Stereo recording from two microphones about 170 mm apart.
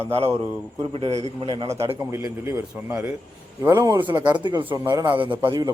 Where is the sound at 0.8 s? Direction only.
35° right (ahead or behind).